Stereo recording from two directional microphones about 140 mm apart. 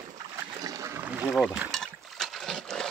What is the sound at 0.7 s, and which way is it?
Boat, 20° right (ahead or behind).